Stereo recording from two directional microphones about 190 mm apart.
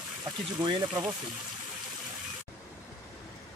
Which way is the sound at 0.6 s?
25° right (ahead or behind).